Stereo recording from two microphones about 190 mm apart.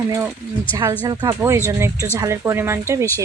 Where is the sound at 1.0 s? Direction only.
20° right (ahead or behind).